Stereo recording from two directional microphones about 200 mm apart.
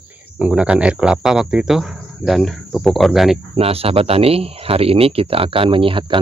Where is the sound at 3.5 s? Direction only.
30° right (ahead or behind).